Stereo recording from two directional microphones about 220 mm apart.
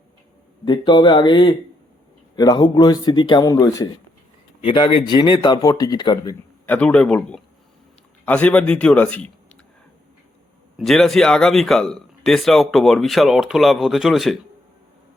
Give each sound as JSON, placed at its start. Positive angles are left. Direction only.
{"t": 0.6, "sound": "speech", "side_deg": 20}
{"t": 6.7, "sound": "a man's voice", "side_deg": 5}
{"t": 10.8, "sound": "speech", "side_deg": 0}